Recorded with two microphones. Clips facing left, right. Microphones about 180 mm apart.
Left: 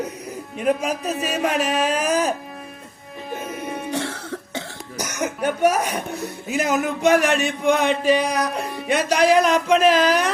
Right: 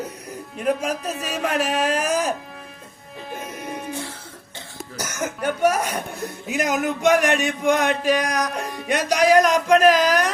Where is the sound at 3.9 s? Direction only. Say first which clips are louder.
Left 6 dB; 80° left.